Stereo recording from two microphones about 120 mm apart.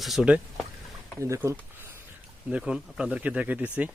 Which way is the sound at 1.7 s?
20° right (ahead or behind).